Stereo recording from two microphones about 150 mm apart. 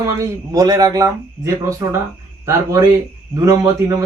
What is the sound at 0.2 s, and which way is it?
Speech, 25° right (ahead or behind).